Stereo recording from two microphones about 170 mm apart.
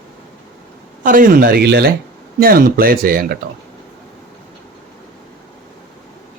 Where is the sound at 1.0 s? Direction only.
50° right (ahead or behind); by 1.9 s 75° right (ahead or behind).